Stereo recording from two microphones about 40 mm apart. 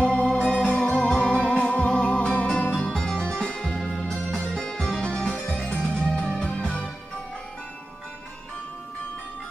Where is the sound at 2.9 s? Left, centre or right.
Centre.